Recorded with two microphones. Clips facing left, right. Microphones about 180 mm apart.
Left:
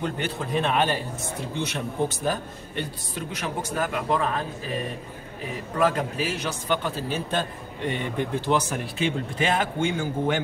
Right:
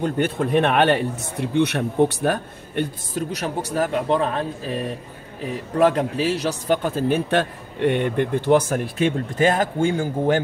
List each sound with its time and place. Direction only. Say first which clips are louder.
0.0 s speech: right 7 dB; 55° right (ahead or behind); by 4.3 s 35° right (ahead or behind)
5.8 s a man's voice: right 6 dB; 35° right (ahead or behind)